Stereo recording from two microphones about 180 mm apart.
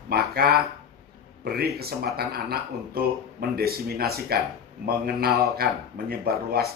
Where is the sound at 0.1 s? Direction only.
60° right (ahead or behind).